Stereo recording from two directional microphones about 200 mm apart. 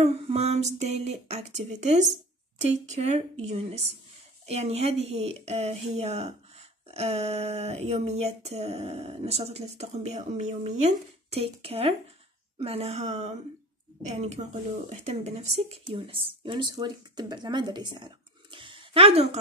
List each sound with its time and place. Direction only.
0.0 s speech: 30° right (ahead or behind)